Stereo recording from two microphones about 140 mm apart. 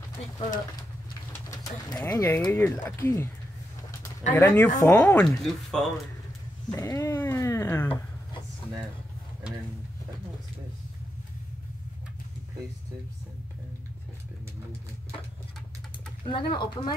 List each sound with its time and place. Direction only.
1.3 s speech: 25° left (ahead or behind)
4.3 s speech: 15° left (ahead or behind)
6.7 s speech: 25° left (ahead or behind)
16.3 s speech: 35° left (ahead or behind)